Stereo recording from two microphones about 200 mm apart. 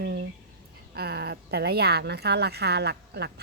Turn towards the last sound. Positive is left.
turn(degrees=-55)  # may be behind; listen again after turning